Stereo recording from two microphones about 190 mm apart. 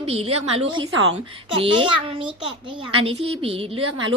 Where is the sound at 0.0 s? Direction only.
30° right (ahead or behind).